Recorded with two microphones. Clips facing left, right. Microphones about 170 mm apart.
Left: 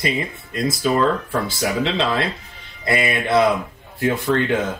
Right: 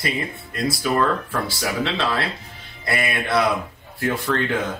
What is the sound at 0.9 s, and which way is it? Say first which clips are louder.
Speech: left 1 dB; 20° left (ahead or behind).